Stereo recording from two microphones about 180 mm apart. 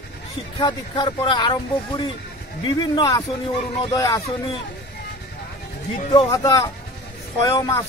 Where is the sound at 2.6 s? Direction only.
25° left (ahead or behind).